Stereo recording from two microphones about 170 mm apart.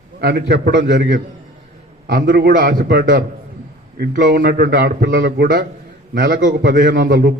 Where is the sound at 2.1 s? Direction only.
65° right (ahead or behind); by 2.9 s 50° right (ahead or behind).